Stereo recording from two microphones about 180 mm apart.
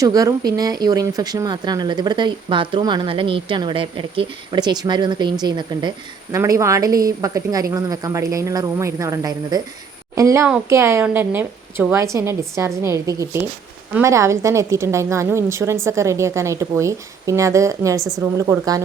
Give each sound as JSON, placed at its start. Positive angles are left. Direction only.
{"t": 0.0, "sound": "a woman's voice", "side_deg": -20}